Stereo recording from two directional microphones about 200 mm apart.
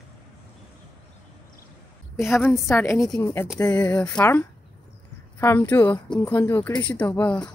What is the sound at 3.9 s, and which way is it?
Speech, 5° left (ahead or behind).